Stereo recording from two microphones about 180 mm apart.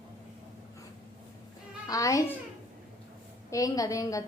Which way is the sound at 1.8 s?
20° left (ahead or behind).